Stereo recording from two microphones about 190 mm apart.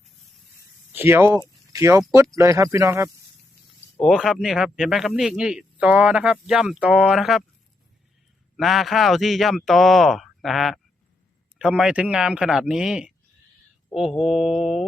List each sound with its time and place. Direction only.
0.9 s speech: 10° right (ahead or behind)
3.9 s speech: centre (ahead or behind)
8.5 s speech: centre (ahead or behind)